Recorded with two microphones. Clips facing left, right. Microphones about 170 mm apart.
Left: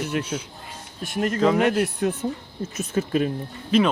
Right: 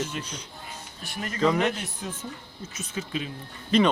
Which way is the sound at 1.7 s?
60° left (ahead or behind).